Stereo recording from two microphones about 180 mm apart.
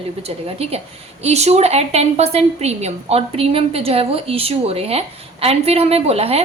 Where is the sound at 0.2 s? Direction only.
35° right (ahead or behind).